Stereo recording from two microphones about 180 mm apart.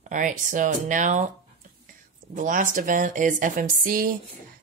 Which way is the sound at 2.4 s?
50° right (ahead or behind).